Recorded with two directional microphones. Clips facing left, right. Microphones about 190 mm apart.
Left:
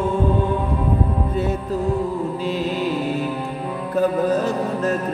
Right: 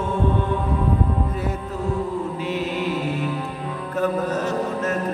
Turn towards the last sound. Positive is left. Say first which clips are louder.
# left 2 dB
turn(degrees=35)  # may be behind; listen again after turning